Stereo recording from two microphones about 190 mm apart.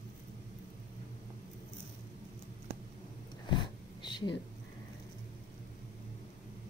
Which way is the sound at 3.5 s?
25° left (ahead or behind).